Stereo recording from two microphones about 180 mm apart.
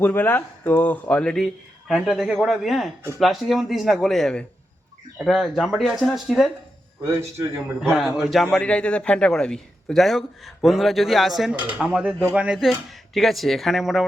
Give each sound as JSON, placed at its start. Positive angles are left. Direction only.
{"t": 0.0, "sound": "a man's voice", "side_deg": 10}
{"t": 7.0, "sound": "a man's voice", "side_deg": -15}
{"t": 7.8, "sound": "a man's voice", "side_deg": 0}